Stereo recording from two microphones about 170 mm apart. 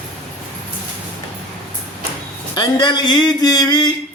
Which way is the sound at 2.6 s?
25° left (ahead or behind).